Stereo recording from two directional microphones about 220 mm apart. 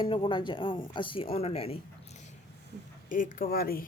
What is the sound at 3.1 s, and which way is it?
Speech, 40° left (ahead or behind).